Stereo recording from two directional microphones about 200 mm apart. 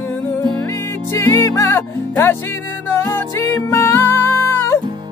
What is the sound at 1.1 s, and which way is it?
Music, 15° left (ahead or behind).